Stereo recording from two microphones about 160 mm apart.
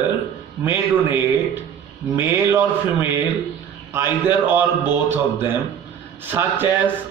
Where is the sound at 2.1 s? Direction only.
15° right (ahead or behind).